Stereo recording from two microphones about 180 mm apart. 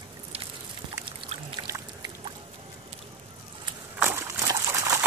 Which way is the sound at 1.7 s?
15° right (ahead or behind).